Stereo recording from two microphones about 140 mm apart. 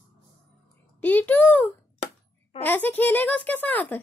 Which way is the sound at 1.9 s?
50° left (ahead or behind).